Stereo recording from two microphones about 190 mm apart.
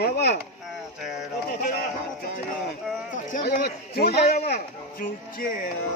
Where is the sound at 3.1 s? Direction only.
45° left (ahead or behind).